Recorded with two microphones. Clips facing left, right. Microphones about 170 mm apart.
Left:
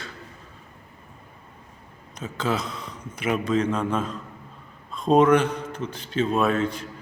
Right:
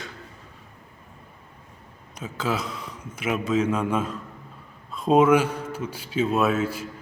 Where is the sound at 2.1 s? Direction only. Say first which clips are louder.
Left 1 dB; 10° right (ahead or behind).